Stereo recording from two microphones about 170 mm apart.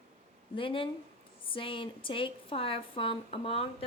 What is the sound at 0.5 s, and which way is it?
A woman's voice, 30° left (ahead or behind).